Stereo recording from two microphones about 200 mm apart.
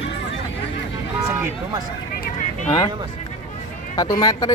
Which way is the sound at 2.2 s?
40° left (ahead or behind).